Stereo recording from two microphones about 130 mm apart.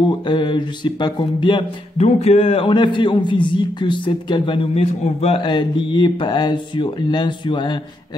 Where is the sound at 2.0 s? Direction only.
55° left (ahead or behind).